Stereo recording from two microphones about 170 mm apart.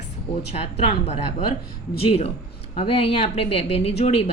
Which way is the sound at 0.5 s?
35° left (ahead or behind).